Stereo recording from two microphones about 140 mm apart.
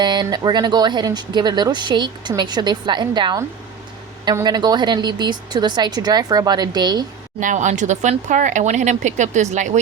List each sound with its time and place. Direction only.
0.0 s speech: 30° right (ahead or behind)
4.4 s speech: 30° right (ahead or behind)
7.3 s speech: 65° right (ahead or behind)